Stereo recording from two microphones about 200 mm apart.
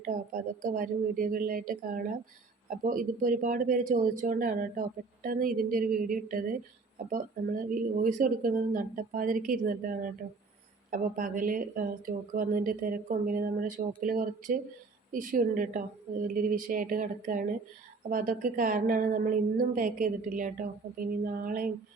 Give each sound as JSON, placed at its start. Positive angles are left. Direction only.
{"t": 0.0, "sound": "speech", "side_deg": -40}